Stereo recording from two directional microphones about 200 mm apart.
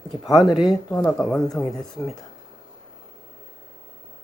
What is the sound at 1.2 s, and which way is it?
Speech, centre (ahead or behind).